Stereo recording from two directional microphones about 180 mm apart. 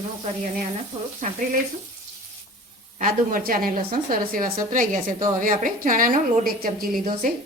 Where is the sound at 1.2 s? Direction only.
45° right (ahead or behind).